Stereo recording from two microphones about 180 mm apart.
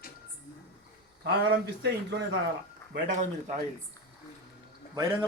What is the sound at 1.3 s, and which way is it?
Speech, 65° right (ahead or behind).